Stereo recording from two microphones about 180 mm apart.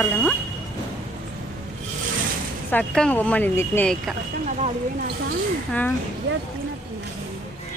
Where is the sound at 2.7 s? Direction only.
5° left (ahead or behind).